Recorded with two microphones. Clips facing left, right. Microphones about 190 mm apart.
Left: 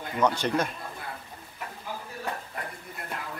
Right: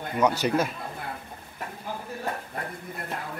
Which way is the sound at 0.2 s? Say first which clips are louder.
Right 2 dB; 10° right (ahead or behind).